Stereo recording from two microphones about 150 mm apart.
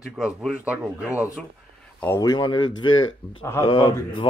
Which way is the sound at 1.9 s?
20° left (ahead or behind).